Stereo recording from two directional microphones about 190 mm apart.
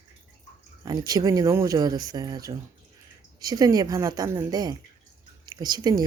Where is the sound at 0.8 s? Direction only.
20° right (ahead or behind).